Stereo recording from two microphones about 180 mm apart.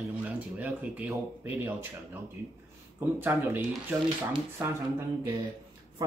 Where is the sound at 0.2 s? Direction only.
10° right (ahead or behind).